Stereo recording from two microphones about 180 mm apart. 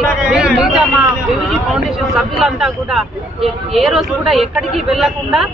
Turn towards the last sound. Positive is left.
turn(degrees=0)  # may be behind; listen again after turning